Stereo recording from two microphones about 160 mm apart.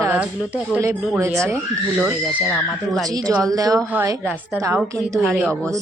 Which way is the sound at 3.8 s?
10° right (ahead or behind).